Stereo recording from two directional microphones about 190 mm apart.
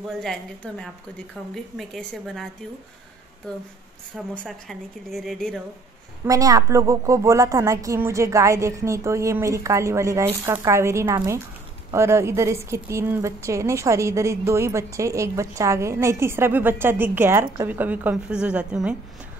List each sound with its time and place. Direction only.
0.2 s a woman's voice: 5° left (ahead or behind)
4.4 s a woman's voice: centre (ahead or behind)
6.2 s a woman's voice: 15° right (ahead or behind)